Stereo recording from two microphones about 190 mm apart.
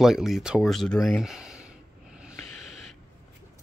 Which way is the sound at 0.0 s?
Centre (ahead or behind).